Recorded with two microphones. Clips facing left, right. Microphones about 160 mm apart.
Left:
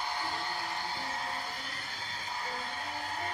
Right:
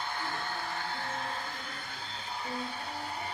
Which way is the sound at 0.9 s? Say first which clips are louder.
Right 1 dB; 60° right (ahead or behind).